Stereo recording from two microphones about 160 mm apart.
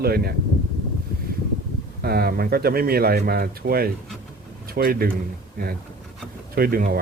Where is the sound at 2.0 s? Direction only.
75° right (ahead or behind).